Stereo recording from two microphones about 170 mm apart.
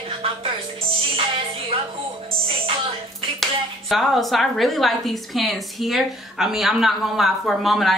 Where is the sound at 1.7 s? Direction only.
30° right (ahead or behind).